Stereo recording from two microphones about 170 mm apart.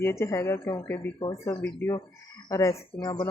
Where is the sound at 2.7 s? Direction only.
30° left (ahead or behind).